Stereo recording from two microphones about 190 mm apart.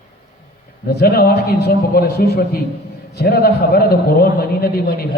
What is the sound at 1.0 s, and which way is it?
A man's voice, 55° left (ahead or behind).